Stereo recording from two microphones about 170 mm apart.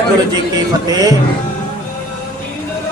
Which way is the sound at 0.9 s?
20° right (ahead or behind).